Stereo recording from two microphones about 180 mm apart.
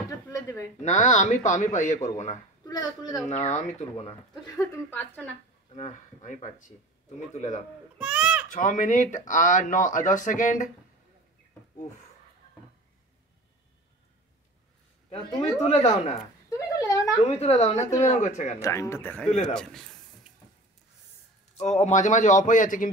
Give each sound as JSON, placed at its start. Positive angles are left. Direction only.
{"t": 0.1, "sound": "a sound", "side_deg": 15}
{"t": 0.8, "sound": "a woman's voice", "side_deg": 40}
{"t": 2.6, "sound": "a child's voice", "side_deg": 20}
{"t": 3.3, "sound": "a woman's voice", "side_deg": 40}
{"t": 4.6, "sound": "speech", "side_deg": 10}
{"t": 5.7, "sound": "a woman's voice", "side_deg": 40}
{"t": 8.0, "sound": "baby cry", "side_deg": -5}
{"t": 8.5, "sound": "speech", "side_deg": 45}
{"t": 16.4, "sound": "speech", "side_deg": 20}
{"t": 17.2, "sound": "a woman's voice", "side_deg": 35}
{"t": 18.6, "sound": "a man's voice", "side_deg": 15}
{"t": 21.5, "sound": "speech", "side_deg": 40}